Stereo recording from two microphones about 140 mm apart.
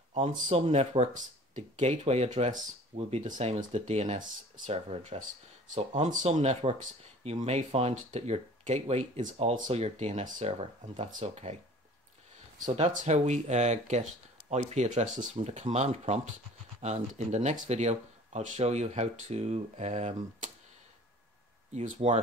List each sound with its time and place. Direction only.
0.1 s speech: 50° right (ahead or behind)
6.0 s speech: 60° right (ahead or behind)
11.1 s speech: 60° right (ahead or behind)
12.7 s speech: 55° right (ahead or behind)
21.7 s speech: 55° right (ahead or behind)